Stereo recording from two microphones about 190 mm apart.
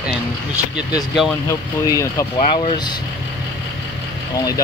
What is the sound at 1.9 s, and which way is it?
Speech, 15° left (ahead or behind).